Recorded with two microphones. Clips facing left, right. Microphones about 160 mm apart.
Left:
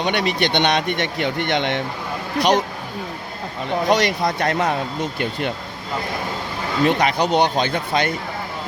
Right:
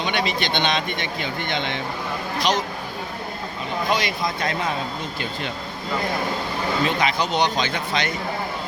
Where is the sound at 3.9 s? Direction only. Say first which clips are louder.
Left 6 dB; 70° left (ahead or behind).